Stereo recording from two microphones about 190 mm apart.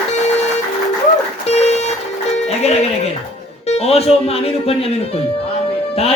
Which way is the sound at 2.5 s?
35° left (ahead or behind).